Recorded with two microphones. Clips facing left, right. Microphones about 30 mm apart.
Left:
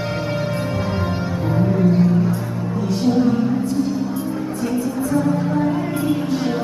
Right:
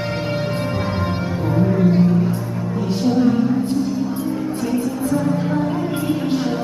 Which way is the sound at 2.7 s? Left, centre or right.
Right.